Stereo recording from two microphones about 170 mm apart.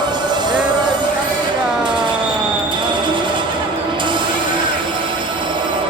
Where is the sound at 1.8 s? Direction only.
25° right (ahead or behind).